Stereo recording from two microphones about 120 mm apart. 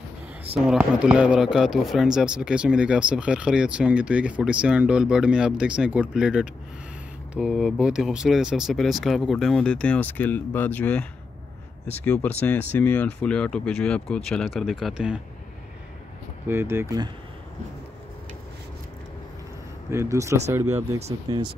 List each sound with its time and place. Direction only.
0.7 s speech: 10° right (ahead or behind)
16.4 s speech: 20° right (ahead or behind)
19.9 s speech: 25° right (ahead or behind)